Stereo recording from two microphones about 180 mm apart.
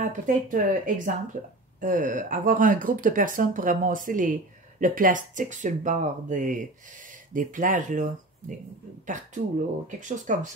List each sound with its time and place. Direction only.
0.1 s speech: 45° right (ahead or behind)